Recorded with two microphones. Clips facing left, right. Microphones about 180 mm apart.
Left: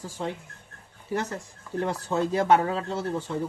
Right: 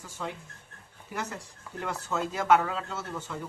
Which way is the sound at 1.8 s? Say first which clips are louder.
Left 5 dB; 35° left (ahead or behind).